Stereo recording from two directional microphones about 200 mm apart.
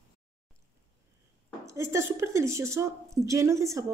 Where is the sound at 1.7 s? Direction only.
15° right (ahead or behind).